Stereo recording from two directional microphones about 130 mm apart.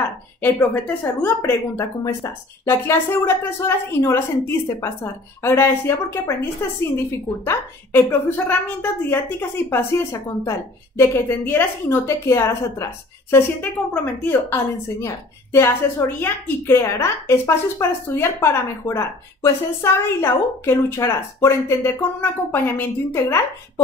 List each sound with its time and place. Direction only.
0.4 s a woman's voice: 15° left (ahead or behind)